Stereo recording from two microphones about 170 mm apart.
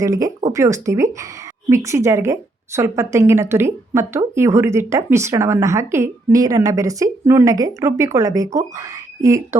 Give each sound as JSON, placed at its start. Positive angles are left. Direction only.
{"t": 0.0, "sound": "a woman's voice", "side_deg": -20}